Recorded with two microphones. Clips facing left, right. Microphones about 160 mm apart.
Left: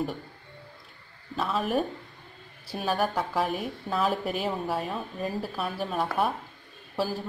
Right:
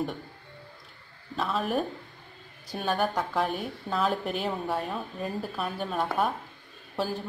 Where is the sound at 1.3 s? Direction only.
Centre (ahead or behind).